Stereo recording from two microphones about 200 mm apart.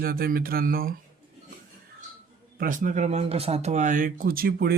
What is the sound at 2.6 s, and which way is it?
Speech, 40° right (ahead or behind).